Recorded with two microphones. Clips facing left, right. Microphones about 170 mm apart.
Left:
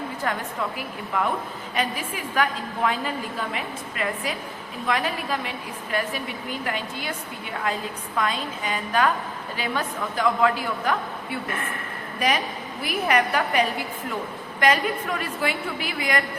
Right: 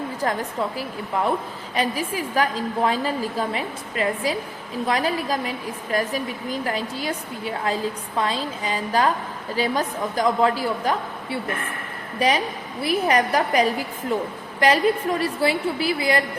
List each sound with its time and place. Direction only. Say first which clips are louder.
0.2 s a woman's voice: right 4 dB; 35° right (ahead or behind)
12.8 s a woman's voice: right 3 dB; 35° right (ahead or behind)